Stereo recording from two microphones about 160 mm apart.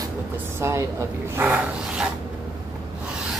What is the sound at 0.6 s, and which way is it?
A woman's voice, 15° right (ahead or behind).